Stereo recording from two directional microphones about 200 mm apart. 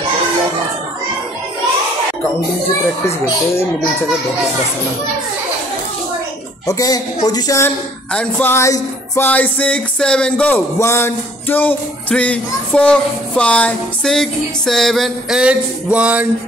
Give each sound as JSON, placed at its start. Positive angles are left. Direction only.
{"t": 6.7, "sound": "speech", "side_deg": 20}